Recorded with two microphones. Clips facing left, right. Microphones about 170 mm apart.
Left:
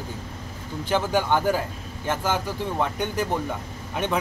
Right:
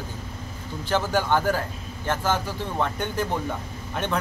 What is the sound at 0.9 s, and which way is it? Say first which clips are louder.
Speech: left 1 dB; 15° left (ahead or behind).